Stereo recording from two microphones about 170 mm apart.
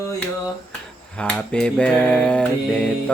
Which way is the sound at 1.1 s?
5° left (ahead or behind).